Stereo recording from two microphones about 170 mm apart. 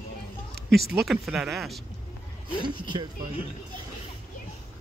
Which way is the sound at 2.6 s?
25° right (ahead or behind).